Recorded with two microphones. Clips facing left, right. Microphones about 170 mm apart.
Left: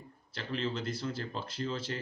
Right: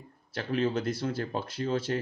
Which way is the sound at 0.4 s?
60° right (ahead or behind).